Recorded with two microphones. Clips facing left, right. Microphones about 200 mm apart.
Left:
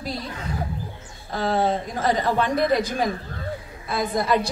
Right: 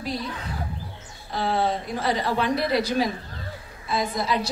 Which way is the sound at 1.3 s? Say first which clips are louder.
Left 2 dB; 45° left (ahead or behind).